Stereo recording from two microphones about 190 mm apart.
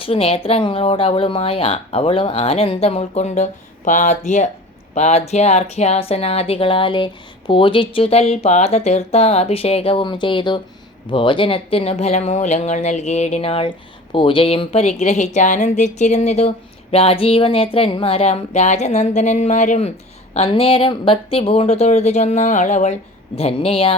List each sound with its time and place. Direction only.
0.0 s speech: 30° left (ahead or behind)